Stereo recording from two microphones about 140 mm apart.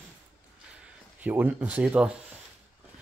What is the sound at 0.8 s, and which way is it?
Speech, 10° right (ahead or behind).